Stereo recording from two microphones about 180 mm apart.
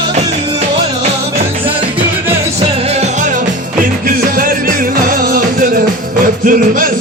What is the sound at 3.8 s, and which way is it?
Music, 50° right (ahead or behind).